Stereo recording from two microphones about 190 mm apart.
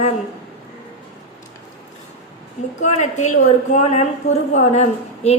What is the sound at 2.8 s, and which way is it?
A woman's voice, 40° left (ahead or behind).